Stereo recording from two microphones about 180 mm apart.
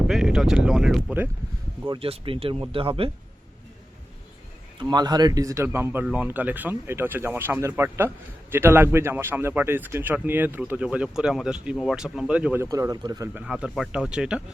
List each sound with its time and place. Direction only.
0.1 s speech: 5° right (ahead or behind)
2.0 s speech: 30° right (ahead or behind)
4.8 s speech: 25° right (ahead or behind)
13.4 s speech: centre (ahead or behind)